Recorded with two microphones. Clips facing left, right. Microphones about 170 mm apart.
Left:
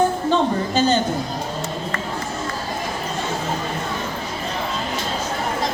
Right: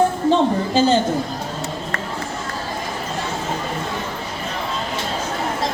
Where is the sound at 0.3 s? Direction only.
30° right (ahead or behind).